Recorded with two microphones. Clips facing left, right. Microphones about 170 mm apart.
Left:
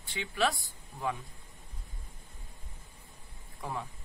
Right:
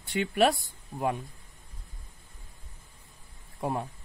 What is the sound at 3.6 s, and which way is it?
Speech, 45° right (ahead or behind).